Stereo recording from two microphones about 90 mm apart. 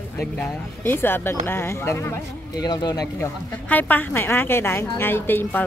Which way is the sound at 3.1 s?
20° left (ahead or behind).